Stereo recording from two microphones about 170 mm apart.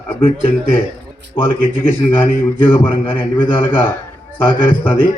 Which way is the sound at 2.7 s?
30° left (ahead or behind).